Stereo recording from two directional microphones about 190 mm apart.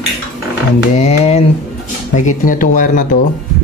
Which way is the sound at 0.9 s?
35° left (ahead or behind).